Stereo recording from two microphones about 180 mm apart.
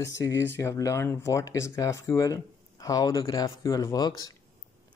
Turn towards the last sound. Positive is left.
turn(degrees=20)  # may be behind; listen again after turning